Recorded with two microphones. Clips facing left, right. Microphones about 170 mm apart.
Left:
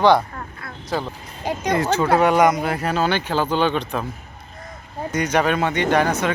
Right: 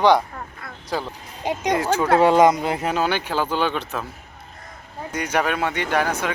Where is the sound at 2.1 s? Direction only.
25° right (ahead or behind); by 4.0 s 5° right (ahead or behind).